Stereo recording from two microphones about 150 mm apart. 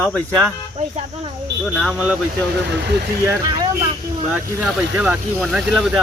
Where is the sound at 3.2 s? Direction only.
25° right (ahead or behind).